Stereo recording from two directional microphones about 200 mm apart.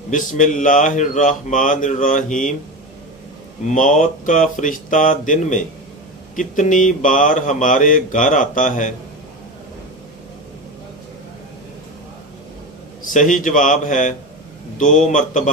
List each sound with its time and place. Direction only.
0.1 s speech: 40° left (ahead or behind)
3.6 s speech: 40° left (ahead or behind)
13.1 s speech: 40° left (ahead or behind)